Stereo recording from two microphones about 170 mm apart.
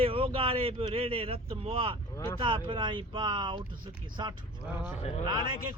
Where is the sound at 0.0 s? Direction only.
35° right (ahead or behind).